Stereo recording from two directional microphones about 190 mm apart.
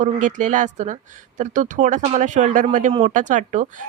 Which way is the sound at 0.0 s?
40° right (ahead or behind).